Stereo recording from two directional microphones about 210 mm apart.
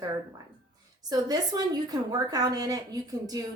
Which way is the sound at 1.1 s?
20° right (ahead or behind).